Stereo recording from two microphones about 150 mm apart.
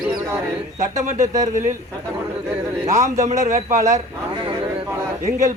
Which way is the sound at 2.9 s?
20° right (ahead or behind).